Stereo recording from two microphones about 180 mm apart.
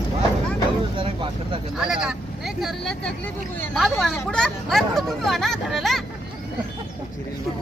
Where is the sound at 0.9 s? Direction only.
30° right (ahead or behind).